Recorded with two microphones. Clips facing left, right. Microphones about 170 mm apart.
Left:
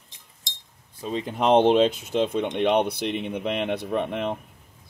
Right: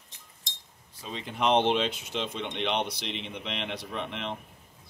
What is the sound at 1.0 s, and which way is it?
Speech, 45° left (ahead or behind).